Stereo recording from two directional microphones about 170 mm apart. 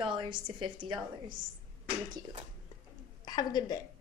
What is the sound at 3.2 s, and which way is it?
Speech, 25° left (ahead or behind).